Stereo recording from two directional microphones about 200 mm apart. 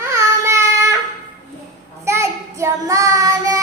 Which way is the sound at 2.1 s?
15° right (ahead or behind).